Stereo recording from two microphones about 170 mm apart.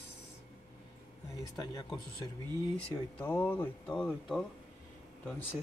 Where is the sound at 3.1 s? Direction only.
10° left (ahead or behind).